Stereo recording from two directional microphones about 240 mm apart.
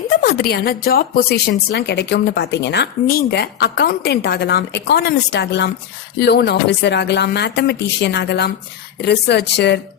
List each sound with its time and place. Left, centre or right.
0.2 s a woman's voice: left